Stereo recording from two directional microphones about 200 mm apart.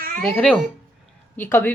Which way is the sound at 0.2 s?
5° left (ahead or behind).